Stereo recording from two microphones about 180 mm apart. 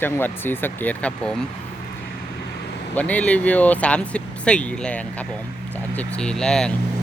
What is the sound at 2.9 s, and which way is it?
Speech, 10° left (ahead or behind).